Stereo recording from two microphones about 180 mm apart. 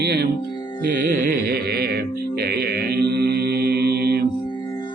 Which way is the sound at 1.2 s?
55° right (ahead or behind).